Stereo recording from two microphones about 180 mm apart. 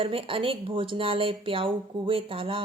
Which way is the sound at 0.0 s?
30° right (ahead or behind).